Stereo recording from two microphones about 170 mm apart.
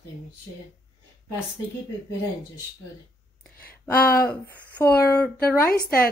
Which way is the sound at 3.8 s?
10° left (ahead or behind).